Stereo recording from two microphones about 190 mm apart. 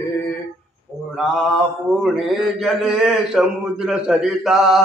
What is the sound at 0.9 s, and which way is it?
Mantra, 15° right (ahead or behind).